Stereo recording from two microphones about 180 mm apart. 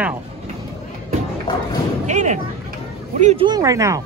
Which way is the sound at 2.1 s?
40° right (ahead or behind).